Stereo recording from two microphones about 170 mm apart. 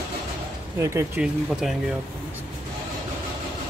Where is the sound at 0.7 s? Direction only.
15° right (ahead or behind).